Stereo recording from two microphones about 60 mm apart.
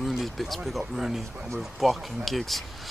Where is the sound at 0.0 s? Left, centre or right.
Centre.